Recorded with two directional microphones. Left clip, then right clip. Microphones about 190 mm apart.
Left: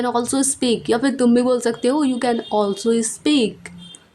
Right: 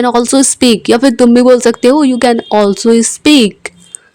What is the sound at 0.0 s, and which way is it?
Speech, 35° right (ahead or behind).